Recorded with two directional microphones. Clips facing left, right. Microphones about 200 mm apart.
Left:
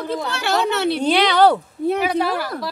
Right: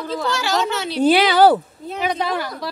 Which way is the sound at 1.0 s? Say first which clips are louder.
Right 3 dB; 5° right (ahead or behind).